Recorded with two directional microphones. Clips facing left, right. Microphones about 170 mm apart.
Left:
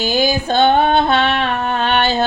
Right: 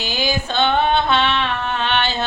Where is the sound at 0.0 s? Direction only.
40° left (ahead or behind).